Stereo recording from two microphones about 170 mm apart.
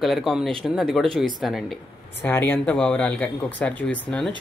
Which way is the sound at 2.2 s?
10° left (ahead or behind).